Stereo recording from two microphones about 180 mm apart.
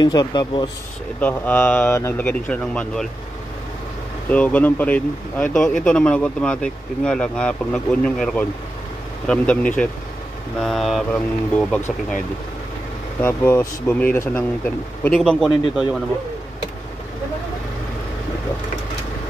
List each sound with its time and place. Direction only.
0.0 s speech: 25° left (ahead or behind)
1.2 s speech: 10° left (ahead or behind)
4.3 s speech: 10° left (ahead or behind)
13.2 s speech: 15° left (ahead or behind)